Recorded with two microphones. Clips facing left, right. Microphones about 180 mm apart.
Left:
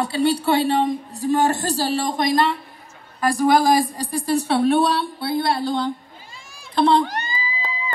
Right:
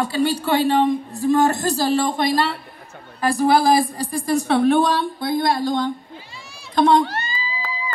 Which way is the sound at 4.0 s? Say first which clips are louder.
Right 1 dB; 35° left (ahead or behind).